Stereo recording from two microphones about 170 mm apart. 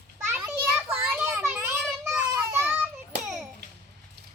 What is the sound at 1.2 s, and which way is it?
Children playing, 15° right (ahead or behind).